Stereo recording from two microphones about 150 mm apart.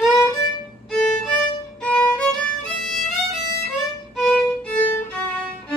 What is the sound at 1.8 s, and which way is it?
Music, 10° left (ahead or behind).